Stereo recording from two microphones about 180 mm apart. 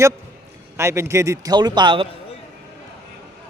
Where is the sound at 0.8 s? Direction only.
15° right (ahead or behind).